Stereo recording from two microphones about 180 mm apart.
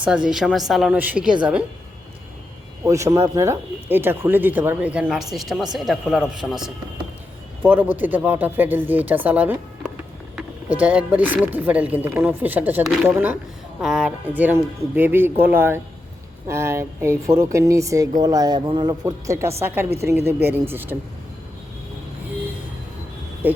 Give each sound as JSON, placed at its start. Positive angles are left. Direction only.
{"t": 0.0, "sound": "a woman's voice", "side_deg": -5}
{"t": 2.8, "sound": "a woman's voice", "side_deg": -15}